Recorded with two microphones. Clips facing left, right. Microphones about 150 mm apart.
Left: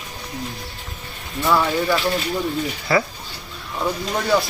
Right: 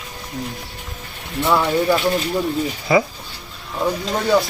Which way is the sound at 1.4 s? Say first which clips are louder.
Right 2 dB; 20° right (ahead or behind).